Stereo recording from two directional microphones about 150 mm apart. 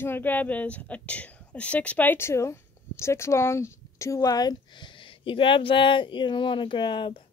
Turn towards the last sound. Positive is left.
turn(degrees=30)  # may be behind; listen again after turning